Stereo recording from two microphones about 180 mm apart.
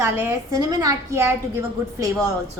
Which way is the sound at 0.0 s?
15° right (ahead or behind).